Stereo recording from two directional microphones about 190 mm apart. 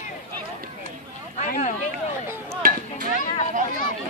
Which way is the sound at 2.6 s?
50° right (ahead or behind).